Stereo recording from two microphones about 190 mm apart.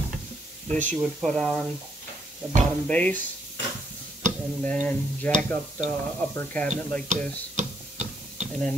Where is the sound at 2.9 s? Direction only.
5° left (ahead or behind).